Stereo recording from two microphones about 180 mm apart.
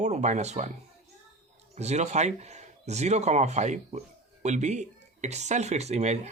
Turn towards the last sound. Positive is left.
turn(degrees=-40)  # may be behind; listen again after turning